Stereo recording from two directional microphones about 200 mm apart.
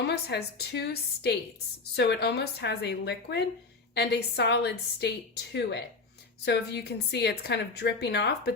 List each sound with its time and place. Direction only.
0.0 s a woman's voice: 55° left (ahead or behind)
6.4 s a woman's voice: 60° left (ahead or behind)